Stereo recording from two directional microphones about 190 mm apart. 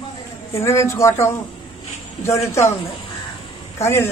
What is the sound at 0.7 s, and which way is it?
Speech, 15° left (ahead or behind).